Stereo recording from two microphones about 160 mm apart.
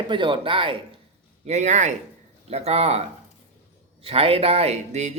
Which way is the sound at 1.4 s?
45° right (ahead or behind).